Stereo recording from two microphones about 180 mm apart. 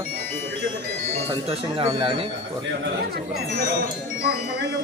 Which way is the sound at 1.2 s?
30° right (ahead or behind).